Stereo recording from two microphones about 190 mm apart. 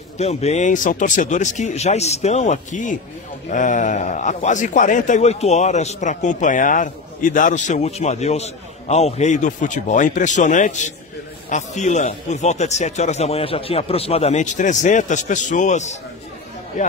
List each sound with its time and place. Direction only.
0.2 s a man's voice: 35° left (ahead or behind)